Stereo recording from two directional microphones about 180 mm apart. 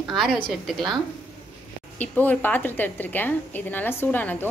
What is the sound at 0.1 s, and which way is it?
A woman's voice, centre (ahead or behind).